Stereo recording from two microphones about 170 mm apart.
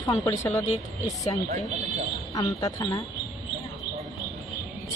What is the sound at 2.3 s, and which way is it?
Speech, 20° left (ahead or behind).